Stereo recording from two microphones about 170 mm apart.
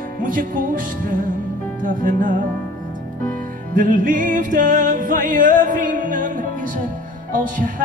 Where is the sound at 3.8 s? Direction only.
50° right (ahead or behind).